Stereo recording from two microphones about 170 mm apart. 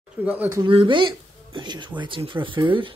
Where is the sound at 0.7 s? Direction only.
30° right (ahead or behind).